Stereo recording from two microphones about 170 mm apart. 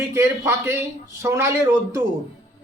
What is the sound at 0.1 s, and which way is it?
Speech, 15° right (ahead or behind).